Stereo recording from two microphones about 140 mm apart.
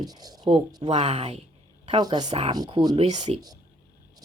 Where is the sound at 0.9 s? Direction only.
50° right (ahead or behind).